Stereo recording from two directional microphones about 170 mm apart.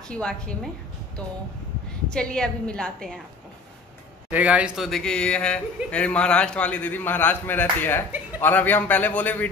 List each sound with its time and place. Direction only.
0.1 s speech: 5° left (ahead or behind)
2.0 s speech: 5° left (ahead or behind)
4.3 s a man's voice: 10° right (ahead or behind); by 9.5 s 10° left (ahead or behind)